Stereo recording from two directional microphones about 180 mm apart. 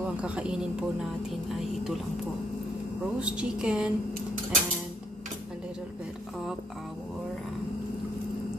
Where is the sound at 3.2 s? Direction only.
5° right (ahead or behind).